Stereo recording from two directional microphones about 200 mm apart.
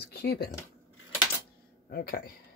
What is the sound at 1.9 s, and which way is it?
Speech, 50° left (ahead or behind).